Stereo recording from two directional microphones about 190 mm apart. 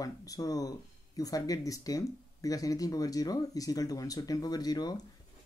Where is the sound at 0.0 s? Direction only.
20° left (ahead or behind).